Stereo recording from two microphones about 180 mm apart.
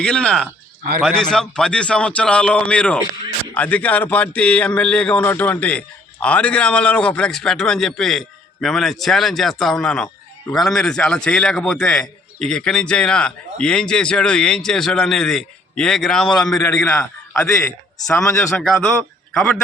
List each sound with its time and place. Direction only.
0.0 s a man's voice: 5° left (ahead or behind)
18.1 s a man's voice: 5° left (ahead or behind)